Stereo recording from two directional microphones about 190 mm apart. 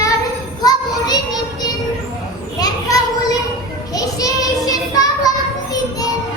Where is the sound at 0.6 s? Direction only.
20° left (ahead or behind).